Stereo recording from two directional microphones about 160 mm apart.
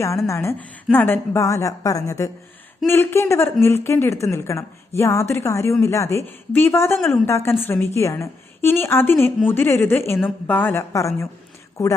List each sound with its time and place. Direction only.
0.3 s a woman's voice: 15° left (ahead or behind)